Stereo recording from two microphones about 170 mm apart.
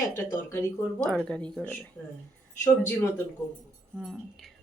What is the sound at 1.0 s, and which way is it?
Speech, 5° left (ahead or behind).